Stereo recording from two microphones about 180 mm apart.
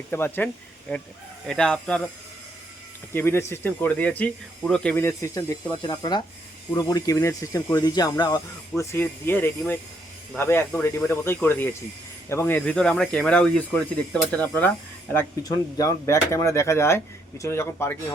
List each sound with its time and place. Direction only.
0.1 s speech: 10° left (ahead or behind)
3.1 s speech: 15° left (ahead or behind)